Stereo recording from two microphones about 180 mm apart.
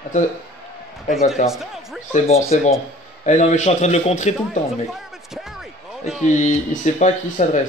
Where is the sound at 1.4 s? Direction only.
45° left (ahead or behind).